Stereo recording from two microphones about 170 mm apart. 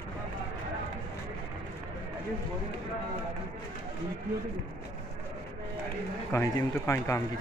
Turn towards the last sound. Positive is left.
turn(degrees=20)  # may be behind; listen again after turning